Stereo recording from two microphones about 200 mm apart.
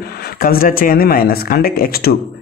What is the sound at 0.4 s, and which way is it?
Speech, 45° left (ahead or behind).